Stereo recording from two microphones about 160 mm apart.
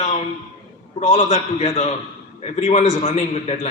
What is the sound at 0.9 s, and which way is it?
A man's voice, 40° left (ahead or behind).